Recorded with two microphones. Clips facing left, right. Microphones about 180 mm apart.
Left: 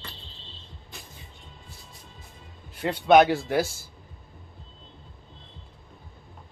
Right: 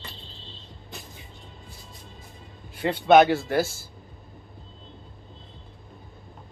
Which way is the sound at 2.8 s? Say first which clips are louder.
Right 1 dB; 5° right (ahead or behind).